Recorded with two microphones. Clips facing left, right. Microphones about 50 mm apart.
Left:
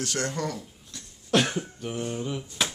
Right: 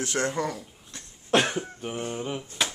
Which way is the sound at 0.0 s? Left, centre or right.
Right.